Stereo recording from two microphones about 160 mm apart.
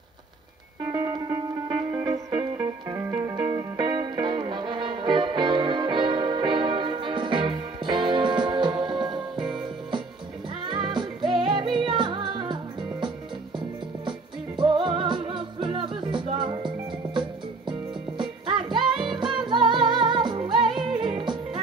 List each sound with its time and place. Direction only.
0.9 s music: 25° right (ahead or behind)
14.6 s music: 30° right (ahead or behind)